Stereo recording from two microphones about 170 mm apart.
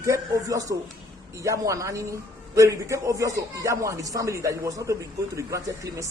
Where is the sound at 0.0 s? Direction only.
20° right (ahead or behind).